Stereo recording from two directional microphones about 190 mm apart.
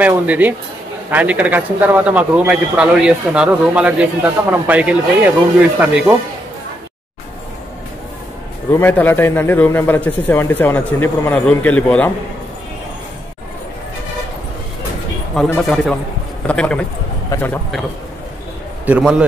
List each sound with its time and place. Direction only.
0.0 s a man's voice: 10° right (ahead or behind)
8.7 s a man's voice: 10° left (ahead or behind)
15.3 s a man's voice: 5° left (ahead or behind)
18.9 s speech: 5° right (ahead or behind)